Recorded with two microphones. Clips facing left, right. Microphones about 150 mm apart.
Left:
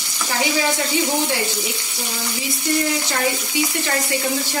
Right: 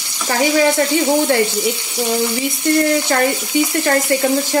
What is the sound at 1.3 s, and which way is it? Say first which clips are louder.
Speech: right 9 dB; 55° right (ahead or behind).